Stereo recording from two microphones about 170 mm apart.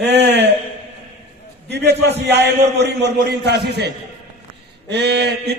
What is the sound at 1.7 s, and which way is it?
Speech, 90° right.